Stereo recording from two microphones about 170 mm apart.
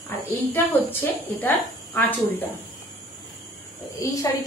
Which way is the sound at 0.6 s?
15° left (ahead or behind).